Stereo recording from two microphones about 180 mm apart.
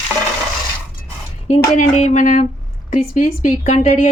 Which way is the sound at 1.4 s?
40° left (ahead or behind).